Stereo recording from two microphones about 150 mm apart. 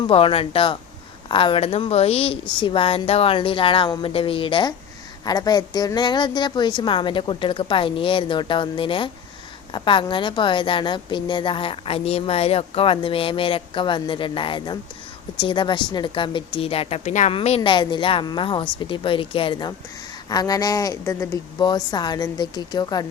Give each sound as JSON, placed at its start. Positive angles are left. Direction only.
{"t": 0.1, "sound": "a woman's voice", "side_deg": 40}
{"t": 17.3, "sound": "a woman's voice", "side_deg": 40}